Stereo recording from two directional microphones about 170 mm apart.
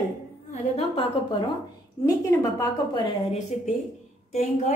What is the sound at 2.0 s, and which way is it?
Speech, 20° left (ahead or behind).